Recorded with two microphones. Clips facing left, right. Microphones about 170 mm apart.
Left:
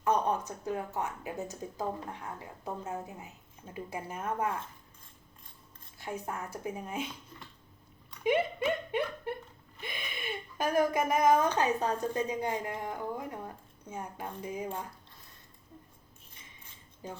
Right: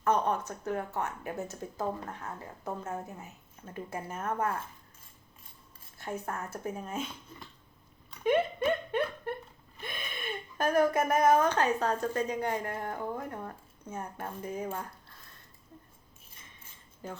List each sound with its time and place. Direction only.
0.0 s a woman's voice: 15° left (ahead or behind)
6.0 s a woman's voice: 10° left (ahead or behind)
8.2 s a sound: 10° left (ahead or behind)
10.0 s a woman's voice: 5° left (ahead or behind)